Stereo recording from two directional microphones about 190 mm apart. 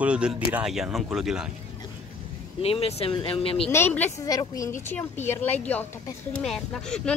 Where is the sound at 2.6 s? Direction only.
30° left (ahead or behind).